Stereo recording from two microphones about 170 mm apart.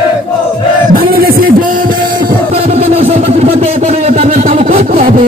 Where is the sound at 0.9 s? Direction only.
60° right (ahead or behind).